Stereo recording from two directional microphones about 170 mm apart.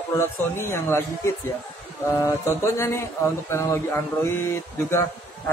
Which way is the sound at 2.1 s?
20° left (ahead or behind).